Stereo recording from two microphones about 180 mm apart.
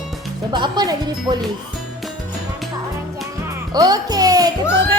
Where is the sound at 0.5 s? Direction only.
25° right (ahead or behind).